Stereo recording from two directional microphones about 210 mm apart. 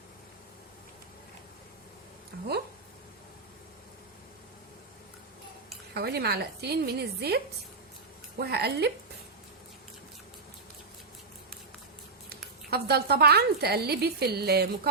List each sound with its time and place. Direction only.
2.3 s speech: 50° right (ahead or behind)
5.9 s speech: 50° right (ahead or behind)
12.7 s speech: 50° right (ahead or behind)